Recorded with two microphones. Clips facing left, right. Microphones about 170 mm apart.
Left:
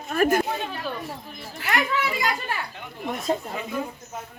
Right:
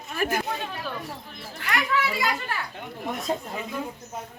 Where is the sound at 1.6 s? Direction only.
5° left (ahead or behind).